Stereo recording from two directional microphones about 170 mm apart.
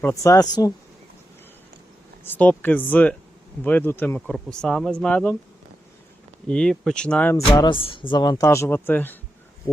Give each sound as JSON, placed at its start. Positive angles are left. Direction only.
{"t": 0.0, "sound": "speech", "side_deg": 20}
{"t": 2.2, "sound": "speech", "side_deg": 10}
{"t": 6.5, "sound": "speech", "side_deg": 5}